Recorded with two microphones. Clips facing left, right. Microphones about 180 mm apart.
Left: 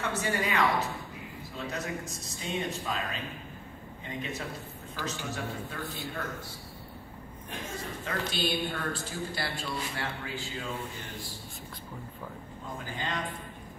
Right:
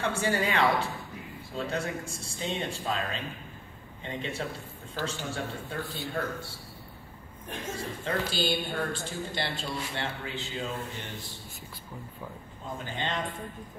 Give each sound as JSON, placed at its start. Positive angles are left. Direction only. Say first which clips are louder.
{"t": 0.0, "sound": "a man's voice", "louder": "right 3 dB", "side_deg": -30}
{"t": 8.0, "sound": "a man's voice", "louder": "right 2 dB", "side_deg": -30}
{"t": 12.9, "sound": "a man's voice", "louder": "right 2 dB", "side_deg": -25}